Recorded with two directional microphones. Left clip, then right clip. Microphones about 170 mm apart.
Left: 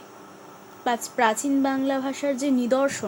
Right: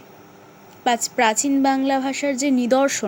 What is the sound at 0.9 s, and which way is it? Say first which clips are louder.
A woman's voice: right 4 dB; 10° right (ahead or behind).